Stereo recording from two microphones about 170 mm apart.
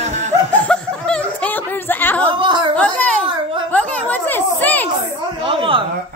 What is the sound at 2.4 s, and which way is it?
Speech, 30° right (ahead or behind).